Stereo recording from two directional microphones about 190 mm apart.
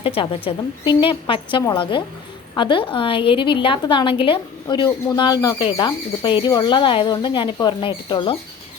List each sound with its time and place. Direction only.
0.0 s a woman's voice: 30° left (ahead or behind)